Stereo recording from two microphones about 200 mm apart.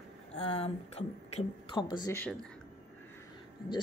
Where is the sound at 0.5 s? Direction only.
30° left (ahead or behind).